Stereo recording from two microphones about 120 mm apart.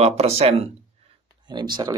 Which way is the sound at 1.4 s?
40° right (ahead or behind).